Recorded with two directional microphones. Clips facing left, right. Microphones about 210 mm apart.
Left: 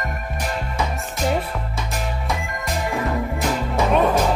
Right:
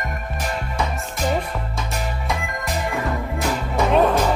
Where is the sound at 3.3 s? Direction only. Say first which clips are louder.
Even; centre (ahead or behind).